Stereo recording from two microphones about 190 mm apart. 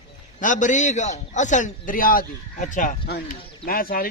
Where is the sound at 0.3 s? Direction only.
40° left (ahead or behind).